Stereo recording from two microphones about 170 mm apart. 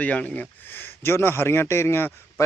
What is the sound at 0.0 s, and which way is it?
A man's voice, 10° left (ahead or behind).